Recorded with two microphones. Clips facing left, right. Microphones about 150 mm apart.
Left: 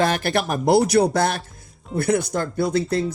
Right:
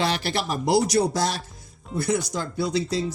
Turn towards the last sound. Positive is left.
turn(degrees=55)  # may be behind; listen again after turning